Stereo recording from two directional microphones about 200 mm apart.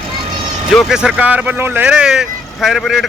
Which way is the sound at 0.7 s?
Centre (ahead or behind).